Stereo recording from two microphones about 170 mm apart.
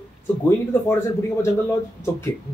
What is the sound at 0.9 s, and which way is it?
Speech, 15° left (ahead or behind).